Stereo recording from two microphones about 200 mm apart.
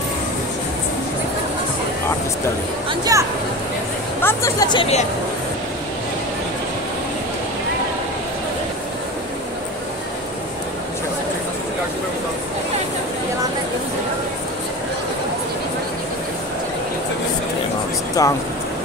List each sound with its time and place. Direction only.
2.9 s speech: 15° right (ahead or behind)
4.2 s speech: 15° left (ahead or behind); by 5.0 s 30° left (ahead or behind)
18.2 s speech: 15° left (ahead or behind)